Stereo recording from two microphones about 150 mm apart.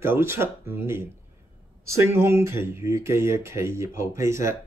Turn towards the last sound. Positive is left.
turn(degrees=-20)  # may be behind; listen again after turning